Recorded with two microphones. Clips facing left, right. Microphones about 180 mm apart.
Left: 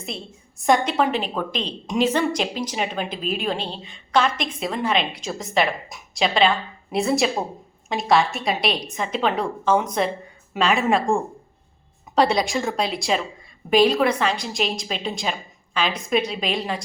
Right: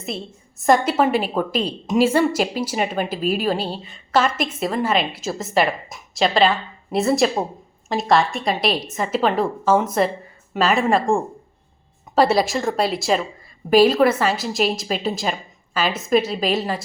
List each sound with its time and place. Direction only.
0.6 s a woman's voice: 5° right (ahead or behind)